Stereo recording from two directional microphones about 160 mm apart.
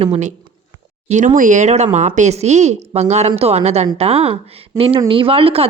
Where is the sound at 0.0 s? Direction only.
45° right (ahead or behind).